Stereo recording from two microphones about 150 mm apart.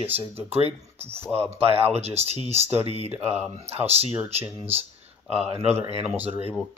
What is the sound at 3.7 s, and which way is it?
Speech, 45° right (ahead or behind).